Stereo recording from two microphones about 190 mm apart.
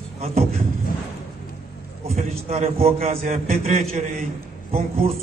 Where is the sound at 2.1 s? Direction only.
35° right (ahead or behind).